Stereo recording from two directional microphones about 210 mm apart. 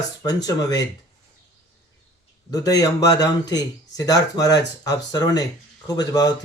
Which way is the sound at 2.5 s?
15° left (ahead or behind).